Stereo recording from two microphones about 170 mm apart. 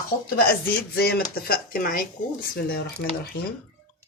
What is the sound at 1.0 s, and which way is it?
Speech, 65° left (ahead or behind).